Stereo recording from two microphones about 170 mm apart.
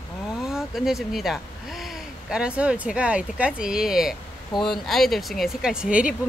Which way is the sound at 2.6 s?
5° right (ahead or behind).